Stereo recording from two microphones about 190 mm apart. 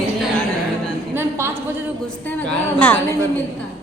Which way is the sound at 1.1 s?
15° right (ahead or behind).